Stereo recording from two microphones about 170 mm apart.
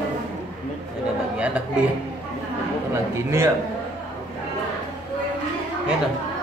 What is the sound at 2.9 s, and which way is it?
Speech, 15° right (ahead or behind).